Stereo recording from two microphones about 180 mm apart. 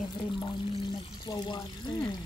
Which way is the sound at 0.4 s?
25° left (ahead or behind).